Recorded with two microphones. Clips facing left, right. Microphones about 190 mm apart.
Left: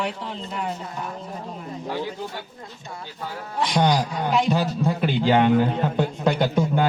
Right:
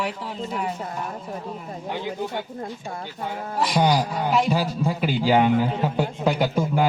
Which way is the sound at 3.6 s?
5° right (ahead or behind).